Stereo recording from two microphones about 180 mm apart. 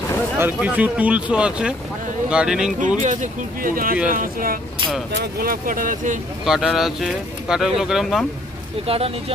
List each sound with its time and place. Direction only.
0.4 s speech: 10° right (ahead or behind)
3.0 s speech: 45° right (ahead or behind)
6.4 s speech: centre (ahead or behind)
8.8 s speech: 35° right (ahead or behind)